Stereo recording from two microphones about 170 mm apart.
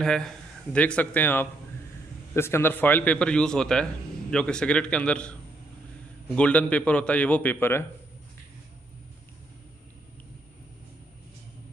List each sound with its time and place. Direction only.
0.0 s a man's voice: 5° left (ahead or behind)